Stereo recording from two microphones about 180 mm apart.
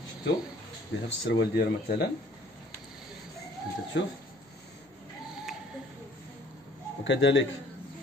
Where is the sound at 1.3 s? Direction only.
65° left (ahead or behind).